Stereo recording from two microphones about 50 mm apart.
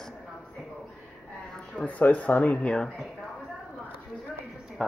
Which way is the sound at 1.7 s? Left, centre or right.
Left.